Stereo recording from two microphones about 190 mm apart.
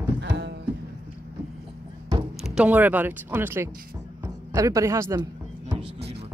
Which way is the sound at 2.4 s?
5° right (ahead or behind).